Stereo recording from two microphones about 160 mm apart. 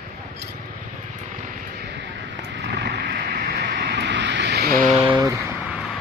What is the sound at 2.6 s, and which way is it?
Vehicle, 90° right.